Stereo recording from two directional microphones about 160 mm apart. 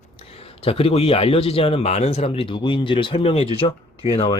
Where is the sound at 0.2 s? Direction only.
40° left (ahead or behind).